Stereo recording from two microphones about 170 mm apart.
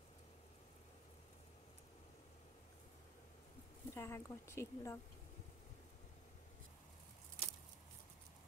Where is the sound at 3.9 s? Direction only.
15° left (ahead or behind).